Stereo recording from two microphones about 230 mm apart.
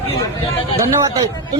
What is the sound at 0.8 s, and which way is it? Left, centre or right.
Speech, centre.